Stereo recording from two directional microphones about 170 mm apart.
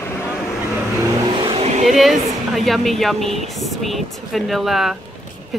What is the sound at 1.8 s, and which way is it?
A woman's voice, centre (ahead or behind).